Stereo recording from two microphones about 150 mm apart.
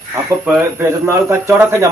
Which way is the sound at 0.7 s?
20° right (ahead or behind).